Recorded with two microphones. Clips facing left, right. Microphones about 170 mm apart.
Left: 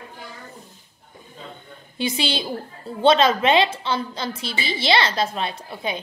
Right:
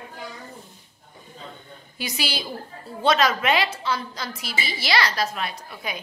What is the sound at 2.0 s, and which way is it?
A woman's voice, 25° left (ahead or behind).